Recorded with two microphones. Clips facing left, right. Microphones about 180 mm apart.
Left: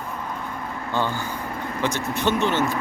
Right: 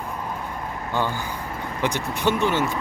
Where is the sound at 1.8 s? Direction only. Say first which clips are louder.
Even; 15° right (ahead or behind).